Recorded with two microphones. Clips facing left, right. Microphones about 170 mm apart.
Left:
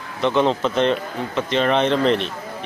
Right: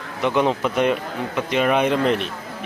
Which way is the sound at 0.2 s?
10° right (ahead or behind).